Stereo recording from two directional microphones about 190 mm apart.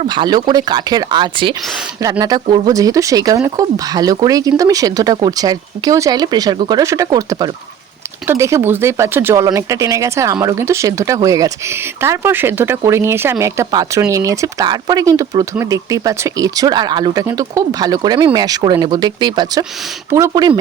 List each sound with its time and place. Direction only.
0.0 s speech: 25° right (ahead or behind)